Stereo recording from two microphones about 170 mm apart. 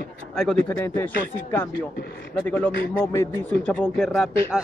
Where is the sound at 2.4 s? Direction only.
10° left (ahead or behind).